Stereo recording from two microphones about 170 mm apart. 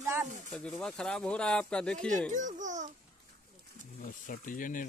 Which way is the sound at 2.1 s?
50° right (ahead or behind).